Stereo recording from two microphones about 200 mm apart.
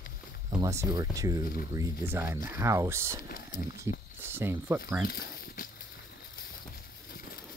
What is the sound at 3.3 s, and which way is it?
Speech, 50° left (ahead or behind).